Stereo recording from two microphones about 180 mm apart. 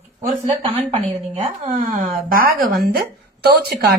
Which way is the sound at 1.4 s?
40° right (ahead or behind).